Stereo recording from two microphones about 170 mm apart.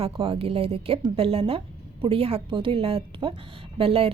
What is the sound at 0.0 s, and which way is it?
A woman's voice, 35° right (ahead or behind).